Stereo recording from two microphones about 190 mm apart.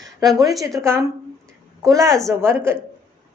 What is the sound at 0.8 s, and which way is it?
A woman's voice, 15° right (ahead or behind).